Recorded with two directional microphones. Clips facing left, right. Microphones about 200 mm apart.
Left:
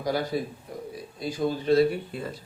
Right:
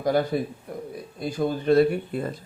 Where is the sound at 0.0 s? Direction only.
50° right (ahead or behind).